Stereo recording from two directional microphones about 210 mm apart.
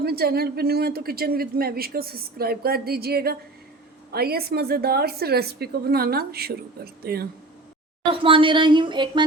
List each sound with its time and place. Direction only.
0.0 s speech: 45° right (ahead or behind)
8.1 s speech: 25° right (ahead or behind)